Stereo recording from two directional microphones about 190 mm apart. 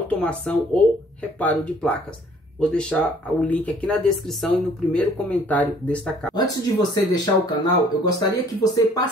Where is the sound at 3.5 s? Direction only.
10° left (ahead or behind).